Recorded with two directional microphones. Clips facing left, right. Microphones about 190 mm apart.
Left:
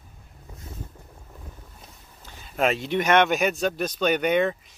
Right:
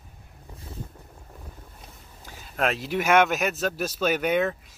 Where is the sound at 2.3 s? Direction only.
Centre (ahead or behind).